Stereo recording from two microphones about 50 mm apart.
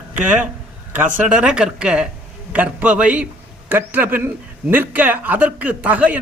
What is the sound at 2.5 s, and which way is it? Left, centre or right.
Speech, right.